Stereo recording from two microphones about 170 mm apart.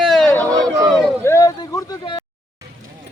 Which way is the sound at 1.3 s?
20° left (ahead or behind).